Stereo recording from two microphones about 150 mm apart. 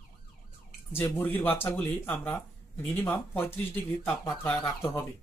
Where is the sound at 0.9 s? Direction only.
15° left (ahead or behind).